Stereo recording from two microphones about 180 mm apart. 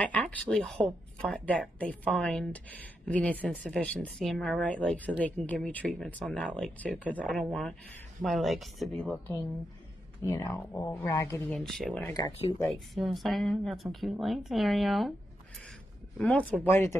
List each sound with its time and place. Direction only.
0.0 s a woman's voice: 10° left (ahead or behind)
11.5 s a woman's voice: centre (ahead or behind)
12.1 s speech: 30° left (ahead or behind)
12.7 s a woman's voice: centre (ahead or behind)
16.2 s a woman's voice: 5° left (ahead or behind)